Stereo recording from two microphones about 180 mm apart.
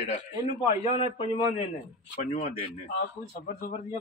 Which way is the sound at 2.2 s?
40° left (ahead or behind).